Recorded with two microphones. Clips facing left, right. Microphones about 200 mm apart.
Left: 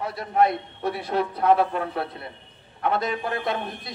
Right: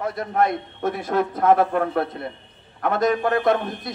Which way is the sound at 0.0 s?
50° right (ahead or behind).